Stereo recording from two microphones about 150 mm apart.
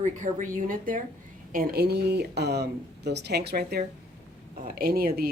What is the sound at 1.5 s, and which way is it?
Speech, 80° right.